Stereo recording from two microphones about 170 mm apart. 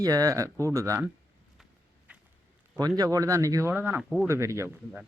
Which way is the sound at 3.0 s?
20° right (ahead or behind).